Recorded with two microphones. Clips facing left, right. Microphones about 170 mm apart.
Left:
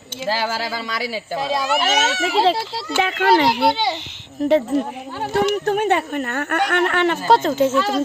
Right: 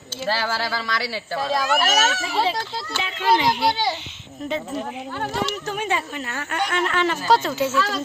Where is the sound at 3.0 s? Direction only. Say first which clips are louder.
Left 5 dB; 65° left (ahead or behind).